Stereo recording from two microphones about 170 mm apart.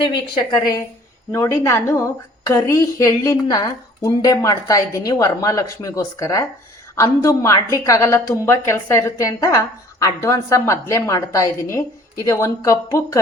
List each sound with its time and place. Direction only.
0.0 s a woman's voice: 30° left (ahead or behind)